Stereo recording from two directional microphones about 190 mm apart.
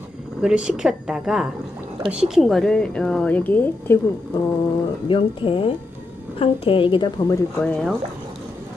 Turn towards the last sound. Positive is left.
turn(degrees=5)  # may be behind; listen again after turning